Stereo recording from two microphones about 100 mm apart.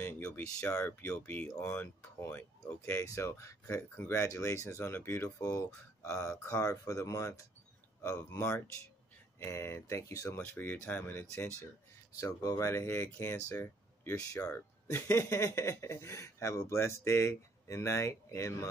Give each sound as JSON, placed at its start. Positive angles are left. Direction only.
{"t": 0.0, "sound": "a sound", "side_deg": 20}
{"t": 0.6, "sound": "speech", "side_deg": 15}
{"t": 1.5, "sound": "speech", "side_deg": 30}
{"t": 1.8, "sound": "speech", "side_deg": 20}
{"t": 10.4, "sound": "speech", "side_deg": 20}
{"t": 12.2, "sound": "speech", "side_deg": 35}